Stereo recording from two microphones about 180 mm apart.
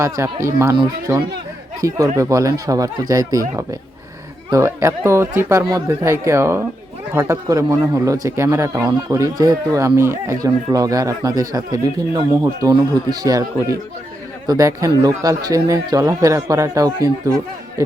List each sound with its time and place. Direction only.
0.0 s speech: 15° right (ahead or behind)